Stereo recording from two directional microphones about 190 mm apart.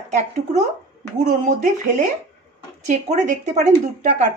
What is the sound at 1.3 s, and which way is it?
Speech, 40° right (ahead or behind).